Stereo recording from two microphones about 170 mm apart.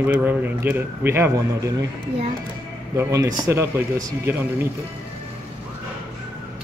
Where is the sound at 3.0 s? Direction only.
20° right (ahead or behind).